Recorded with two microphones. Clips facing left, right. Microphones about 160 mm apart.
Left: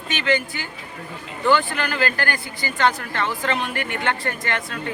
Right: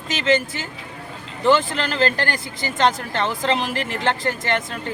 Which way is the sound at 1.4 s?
25° right (ahead or behind).